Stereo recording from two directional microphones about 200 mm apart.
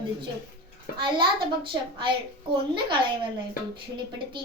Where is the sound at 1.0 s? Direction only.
25° right (ahead or behind).